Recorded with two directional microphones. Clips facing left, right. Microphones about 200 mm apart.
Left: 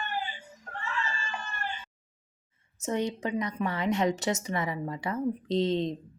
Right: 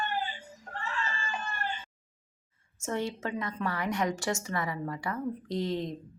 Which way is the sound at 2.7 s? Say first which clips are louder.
Left 3 dB; 20° left (ahead or behind).